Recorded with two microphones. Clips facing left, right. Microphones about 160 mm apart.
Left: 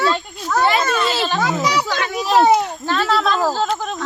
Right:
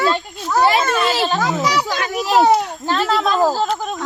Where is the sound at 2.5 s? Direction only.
10° right (ahead or behind).